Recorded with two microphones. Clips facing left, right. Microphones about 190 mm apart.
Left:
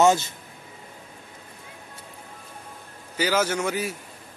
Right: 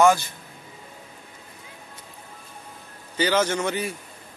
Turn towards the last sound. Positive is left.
turn(degrees=5)  # may be behind; listen again after turning